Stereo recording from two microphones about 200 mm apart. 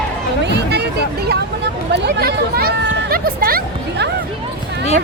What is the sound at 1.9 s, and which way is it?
Speech, 55° right (ahead or behind).